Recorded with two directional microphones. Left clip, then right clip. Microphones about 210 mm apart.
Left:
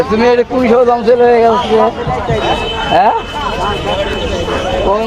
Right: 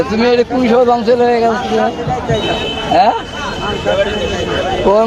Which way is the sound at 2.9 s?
15° left (ahead or behind).